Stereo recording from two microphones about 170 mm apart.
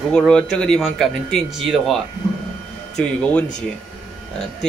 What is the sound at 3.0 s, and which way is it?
Speech, 5° left (ahead or behind).